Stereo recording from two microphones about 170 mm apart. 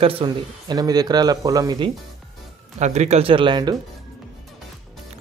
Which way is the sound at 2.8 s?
40° right (ahead or behind).